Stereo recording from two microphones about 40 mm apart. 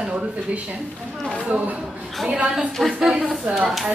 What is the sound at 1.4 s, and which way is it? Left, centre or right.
Speech, right.